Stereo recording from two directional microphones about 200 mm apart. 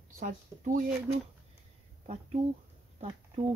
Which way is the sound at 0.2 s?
40° right (ahead or behind).